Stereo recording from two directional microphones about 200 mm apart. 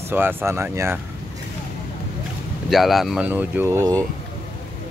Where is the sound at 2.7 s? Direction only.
Centre (ahead or behind); by 4.1 s 15° right (ahead or behind).